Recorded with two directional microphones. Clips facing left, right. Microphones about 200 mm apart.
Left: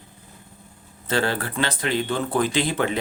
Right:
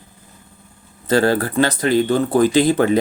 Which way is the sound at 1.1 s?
40° right (ahead or behind).